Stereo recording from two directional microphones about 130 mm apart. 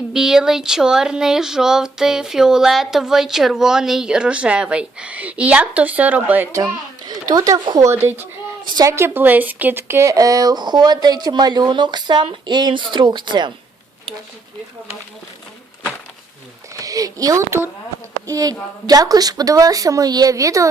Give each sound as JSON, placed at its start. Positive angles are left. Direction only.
{"t": 0.1, "sound": "speech", "side_deg": -5}
{"t": 6.6, "sound": "a child's voice", "side_deg": -30}
{"t": 8.6, "sound": "a woman's voice", "side_deg": -35}
{"t": 8.9, "sound": "speech", "side_deg": -20}
{"t": 16.7, "sound": "a woman's voice", "side_deg": -25}